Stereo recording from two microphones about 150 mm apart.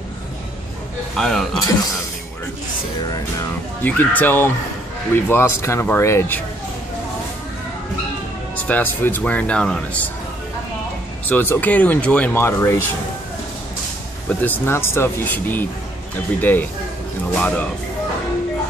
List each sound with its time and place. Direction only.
1.1 s a man's voice: centre (ahead or behind)
3.8 s speech: 10° left (ahead or behind)
8.6 s speech: 10° left (ahead or behind)
11.2 s speech: 15° left (ahead or behind)
14.4 s speech: 15° left (ahead or behind)